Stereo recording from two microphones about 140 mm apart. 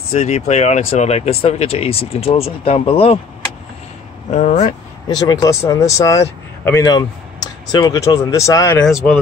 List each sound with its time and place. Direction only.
0.1 s speech: 55° left (ahead or behind)
4.3 s speech: 60° left (ahead or behind)
5.0 s speech: 30° left (ahead or behind)
8.7 s speech: 5° left (ahead or behind)